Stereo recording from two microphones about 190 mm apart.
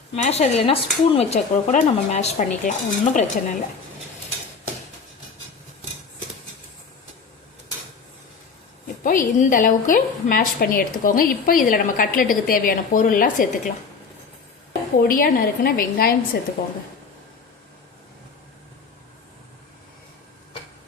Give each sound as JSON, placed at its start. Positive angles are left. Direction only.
{"t": 0.2, "sound": "speech", "side_deg": 35}
{"t": 9.0, "sound": "a woman's voice", "side_deg": 45}